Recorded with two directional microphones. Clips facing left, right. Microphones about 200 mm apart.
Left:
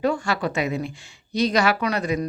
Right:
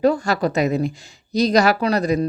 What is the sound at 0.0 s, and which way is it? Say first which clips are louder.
Speech: right 5 dB; 40° right (ahead or behind).